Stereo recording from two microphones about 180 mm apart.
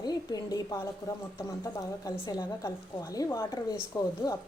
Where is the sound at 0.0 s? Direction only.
20° left (ahead or behind).